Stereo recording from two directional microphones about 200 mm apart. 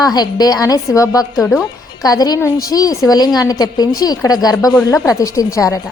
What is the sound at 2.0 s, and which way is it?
A woman's voice, 20° left (ahead or behind).